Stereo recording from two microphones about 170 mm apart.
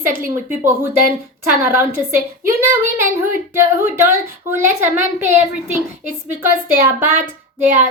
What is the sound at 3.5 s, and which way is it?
A woman's voice, 15° right (ahead or behind).